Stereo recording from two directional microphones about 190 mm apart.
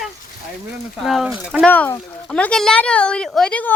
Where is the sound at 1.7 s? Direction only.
10° left (ahead or behind).